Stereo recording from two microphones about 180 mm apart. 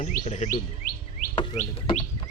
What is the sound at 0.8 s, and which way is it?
Chirp, 50° left (ahead or behind).